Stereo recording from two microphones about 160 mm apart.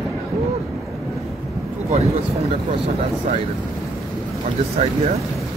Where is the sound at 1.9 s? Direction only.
40° right (ahead or behind).